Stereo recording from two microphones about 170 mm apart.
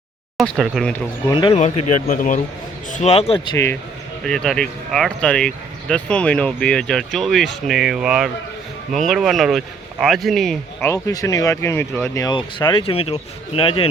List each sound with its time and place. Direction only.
0.3 s speech: centre (ahead or behind)
1.3 s speech: 25° left (ahead or behind)
1.5 s speech: 50° left (ahead or behind)
2.9 s speech: 40° left (ahead or behind)
3.5 s speech: 15° left (ahead or behind)
4.2 s speech: 5° left (ahead or behind)
10.8 s speech: 20° left (ahead or behind)